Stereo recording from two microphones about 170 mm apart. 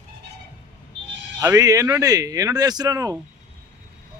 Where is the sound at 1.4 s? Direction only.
20° right (ahead or behind).